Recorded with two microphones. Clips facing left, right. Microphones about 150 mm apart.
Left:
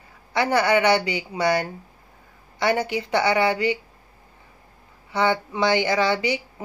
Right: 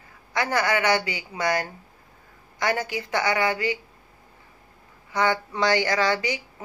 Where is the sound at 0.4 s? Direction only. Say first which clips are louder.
Left 4 dB; 20° left (ahead or behind).